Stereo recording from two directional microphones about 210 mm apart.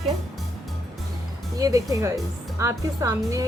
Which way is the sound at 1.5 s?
15° right (ahead or behind).